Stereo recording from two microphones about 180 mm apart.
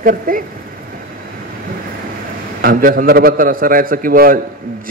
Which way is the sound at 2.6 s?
50° right (ahead or behind).